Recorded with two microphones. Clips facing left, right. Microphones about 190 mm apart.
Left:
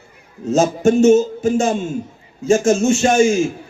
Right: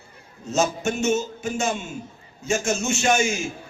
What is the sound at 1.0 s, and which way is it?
Speech, 50° left (ahead or behind).